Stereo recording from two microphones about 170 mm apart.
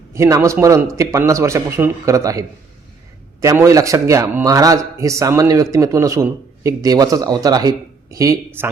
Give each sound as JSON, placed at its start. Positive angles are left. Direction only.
{"t": 0.1, "sound": "a man's voice", "side_deg": -15}
{"t": 3.4, "sound": "a man's voice", "side_deg": -15}